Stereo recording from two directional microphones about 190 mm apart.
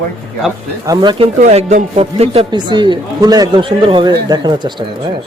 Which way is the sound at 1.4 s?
35° right (ahead or behind).